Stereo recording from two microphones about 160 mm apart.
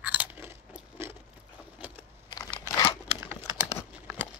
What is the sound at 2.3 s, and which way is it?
Crumpling, 25° left (ahead or behind).